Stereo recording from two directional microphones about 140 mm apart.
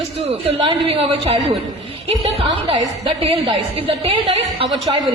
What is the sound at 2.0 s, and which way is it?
A woman's voice, 40° right (ahead or behind).